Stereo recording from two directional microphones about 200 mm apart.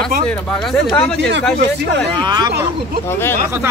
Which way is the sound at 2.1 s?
20° right (ahead or behind).